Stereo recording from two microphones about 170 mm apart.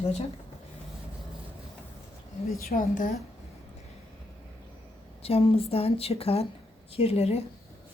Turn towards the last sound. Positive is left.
turn(degrees=40)  # may be behind; listen again after turning